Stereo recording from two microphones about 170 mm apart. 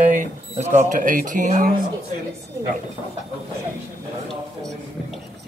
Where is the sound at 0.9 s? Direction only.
50° right (ahead or behind).